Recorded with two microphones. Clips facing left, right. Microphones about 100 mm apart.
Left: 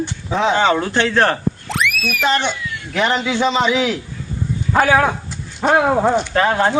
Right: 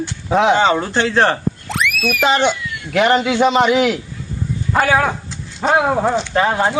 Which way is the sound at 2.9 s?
60° right (ahead or behind).